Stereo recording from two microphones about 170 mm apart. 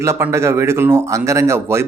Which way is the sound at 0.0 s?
15° right (ahead or behind).